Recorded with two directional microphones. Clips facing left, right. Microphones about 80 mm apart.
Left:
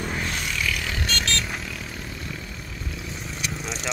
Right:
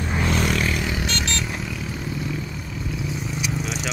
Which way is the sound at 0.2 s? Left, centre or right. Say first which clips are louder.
Right 7 dB; right.